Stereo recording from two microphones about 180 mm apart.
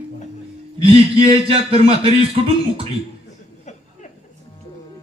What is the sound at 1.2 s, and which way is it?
A man's voice, 30° right (ahead or behind).